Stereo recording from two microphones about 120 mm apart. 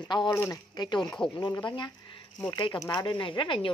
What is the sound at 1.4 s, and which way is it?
Speech, 40° left (ahead or behind).